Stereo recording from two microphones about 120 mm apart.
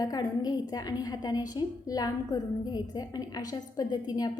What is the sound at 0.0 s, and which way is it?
A woman's voice, 30° left (ahead or behind).